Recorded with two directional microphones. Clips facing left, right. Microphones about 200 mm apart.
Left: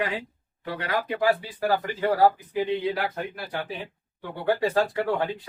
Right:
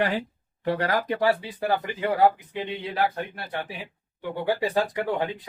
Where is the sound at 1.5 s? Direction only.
20° right (ahead or behind).